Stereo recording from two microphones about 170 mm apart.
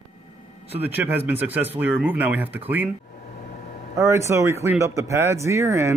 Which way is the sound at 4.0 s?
15° right (ahead or behind).